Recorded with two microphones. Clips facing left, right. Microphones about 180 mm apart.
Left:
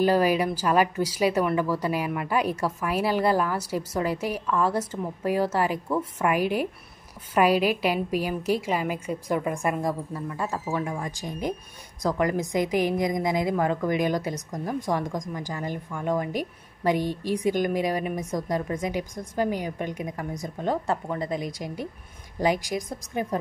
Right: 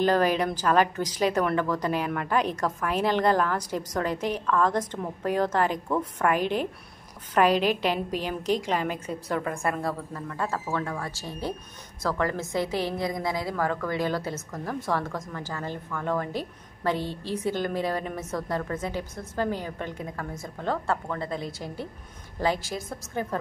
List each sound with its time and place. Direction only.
0.0 s a woman's voice: 10° left (ahead or behind)